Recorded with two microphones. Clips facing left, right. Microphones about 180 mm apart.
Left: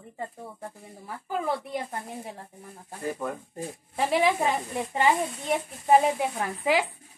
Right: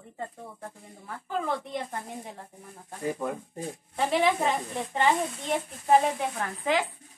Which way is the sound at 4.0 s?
5° left (ahead or behind).